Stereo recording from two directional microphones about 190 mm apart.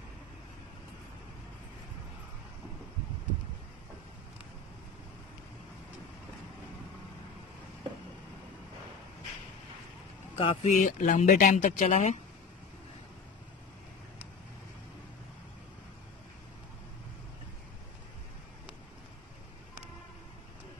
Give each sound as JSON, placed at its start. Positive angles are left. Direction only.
{"t": 10.3, "sound": "speech", "side_deg": 30}